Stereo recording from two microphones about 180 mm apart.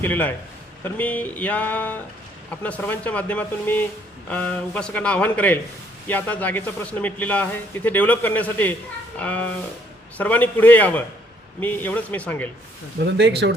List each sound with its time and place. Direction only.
0.0 s a man's voice: 10° left (ahead or behind)
13.1 s speech: 70° right (ahead or behind)